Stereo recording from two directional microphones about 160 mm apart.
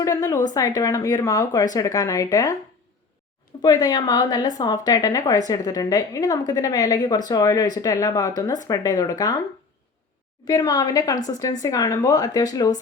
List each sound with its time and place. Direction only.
0.0 s speech: 20° left (ahead or behind)
3.6 s speech: 25° left (ahead or behind)
10.4 s speech: 25° left (ahead or behind)